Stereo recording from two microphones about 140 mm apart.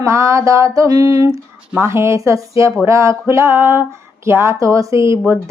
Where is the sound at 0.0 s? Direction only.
20° right (ahead or behind).